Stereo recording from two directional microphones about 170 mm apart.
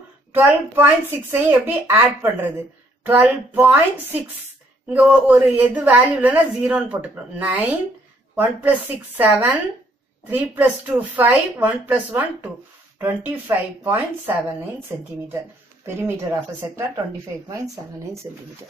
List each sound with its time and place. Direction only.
0.3 s a woman's voice: 10° right (ahead or behind)
4.8 s a woman's voice: 10° right (ahead or behind)
15.8 s a woman's voice: 15° right (ahead or behind)